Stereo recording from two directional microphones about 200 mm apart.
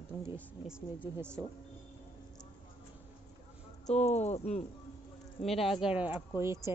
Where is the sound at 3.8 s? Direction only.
35° left (ahead or behind).